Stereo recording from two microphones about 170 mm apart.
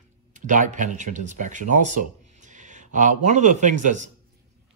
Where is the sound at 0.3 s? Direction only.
50° right (ahead or behind).